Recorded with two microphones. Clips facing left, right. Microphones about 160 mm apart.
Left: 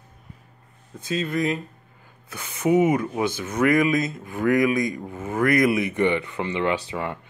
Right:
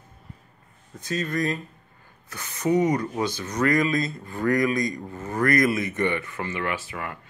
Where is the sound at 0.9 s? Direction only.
10° left (ahead or behind).